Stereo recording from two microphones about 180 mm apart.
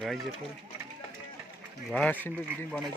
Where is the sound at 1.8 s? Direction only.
5° left (ahead or behind).